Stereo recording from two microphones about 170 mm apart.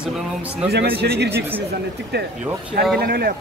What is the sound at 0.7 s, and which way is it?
Speech, 70° right (ahead or behind).